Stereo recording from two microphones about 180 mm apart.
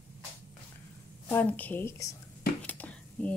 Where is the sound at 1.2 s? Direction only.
10° left (ahead or behind).